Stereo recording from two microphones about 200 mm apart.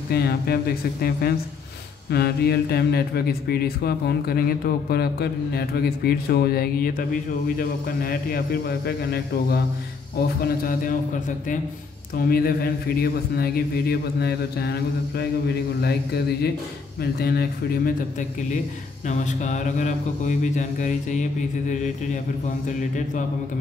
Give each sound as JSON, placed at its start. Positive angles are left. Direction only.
{"t": 0.1, "sound": "speech", "side_deg": 50}
{"t": 19.0, "sound": "speech", "side_deg": 35}